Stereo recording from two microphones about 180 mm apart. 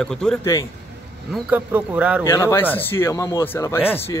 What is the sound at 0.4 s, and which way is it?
Speech, 15° left (ahead or behind).